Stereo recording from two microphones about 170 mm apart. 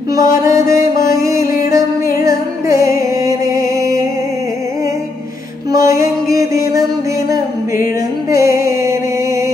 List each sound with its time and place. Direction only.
0.1 s music: 20° right (ahead or behind)
5.7 s mantra: 20° right (ahead or behind)
6.7 s music: 20° right (ahead or behind)